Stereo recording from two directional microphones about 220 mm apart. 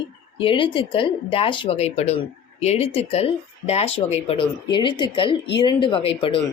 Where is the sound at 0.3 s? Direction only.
20° left (ahead or behind).